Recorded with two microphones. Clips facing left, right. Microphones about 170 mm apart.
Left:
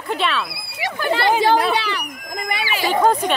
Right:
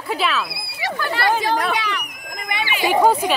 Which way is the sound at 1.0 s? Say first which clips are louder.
Left 4 dB; 20° left (ahead or behind).